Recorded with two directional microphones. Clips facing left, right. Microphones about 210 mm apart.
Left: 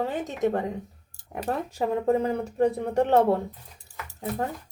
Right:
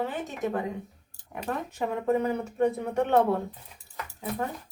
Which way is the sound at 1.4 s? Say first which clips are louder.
Left 3 dB; 35° left (ahead or behind).